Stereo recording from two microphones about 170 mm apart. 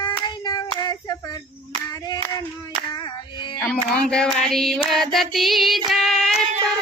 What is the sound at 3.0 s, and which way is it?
Child singing, 25° left (ahead or behind).